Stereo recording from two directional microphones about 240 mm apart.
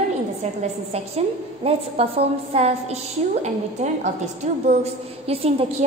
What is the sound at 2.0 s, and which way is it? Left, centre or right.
Speech, right.